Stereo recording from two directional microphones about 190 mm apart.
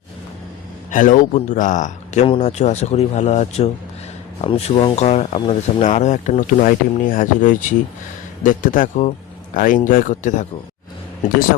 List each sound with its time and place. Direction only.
0.9 s speech: 45° left (ahead or behind)